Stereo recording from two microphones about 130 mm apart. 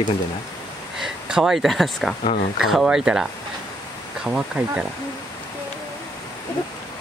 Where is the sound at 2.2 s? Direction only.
60° left (ahead or behind).